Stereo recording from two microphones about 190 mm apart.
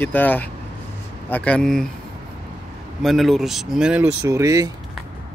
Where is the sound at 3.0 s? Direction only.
Centre (ahead or behind).